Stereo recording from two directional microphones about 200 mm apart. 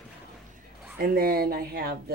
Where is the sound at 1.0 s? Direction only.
50° right (ahead or behind).